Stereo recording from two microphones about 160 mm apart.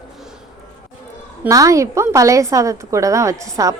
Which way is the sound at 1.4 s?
20° right (ahead or behind).